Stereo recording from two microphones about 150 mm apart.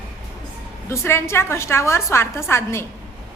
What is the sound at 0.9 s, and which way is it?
A woman's voice, 15° left (ahead or behind).